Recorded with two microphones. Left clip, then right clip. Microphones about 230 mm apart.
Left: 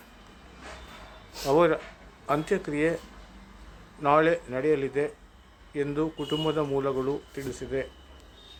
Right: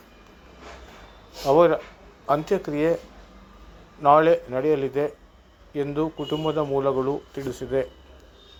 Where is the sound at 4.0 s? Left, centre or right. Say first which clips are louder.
Right 6 dB; centre.